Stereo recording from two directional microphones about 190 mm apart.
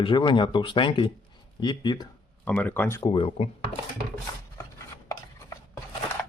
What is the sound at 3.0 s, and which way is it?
Speech, 25° left (ahead or behind).